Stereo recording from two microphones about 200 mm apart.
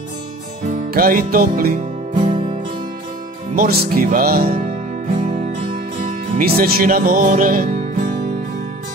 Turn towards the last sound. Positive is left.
turn(degrees=-45)  # may be behind; listen again after turning